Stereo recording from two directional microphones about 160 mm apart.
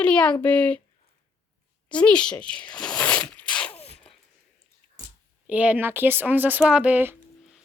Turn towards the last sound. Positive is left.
turn(degrees=-10)  # may be behind; listen again after turning